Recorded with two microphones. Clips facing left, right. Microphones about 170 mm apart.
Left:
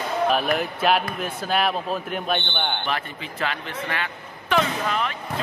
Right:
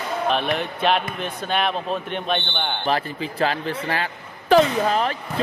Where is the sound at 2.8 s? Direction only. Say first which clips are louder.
Right 5 dB; 35° right (ahead or behind).